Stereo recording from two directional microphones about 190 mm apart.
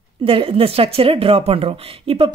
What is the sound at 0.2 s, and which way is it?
Speech, 30° right (ahead or behind).